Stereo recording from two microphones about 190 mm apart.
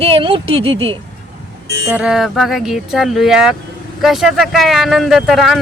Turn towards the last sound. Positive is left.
turn(degrees=0)  # may be behind; listen again after turning